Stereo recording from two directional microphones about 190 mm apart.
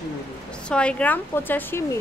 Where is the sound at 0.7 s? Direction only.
5° left (ahead or behind).